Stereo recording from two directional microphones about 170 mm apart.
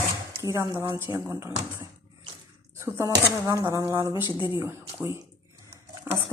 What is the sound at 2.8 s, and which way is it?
Speech, 20° right (ahead or behind).